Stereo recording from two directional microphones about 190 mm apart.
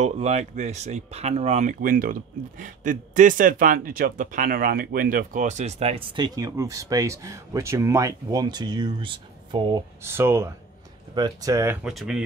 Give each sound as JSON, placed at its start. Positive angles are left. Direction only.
{"t": 0.0, "sound": "speech", "side_deg": -35}
{"t": 10.0, "sound": "speech", "side_deg": -15}